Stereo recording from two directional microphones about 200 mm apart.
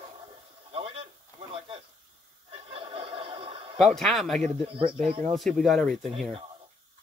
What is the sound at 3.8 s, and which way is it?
Speech, centre (ahead or behind).